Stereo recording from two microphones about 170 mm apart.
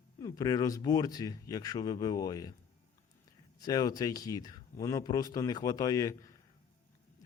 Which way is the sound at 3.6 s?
20° left (ahead or behind).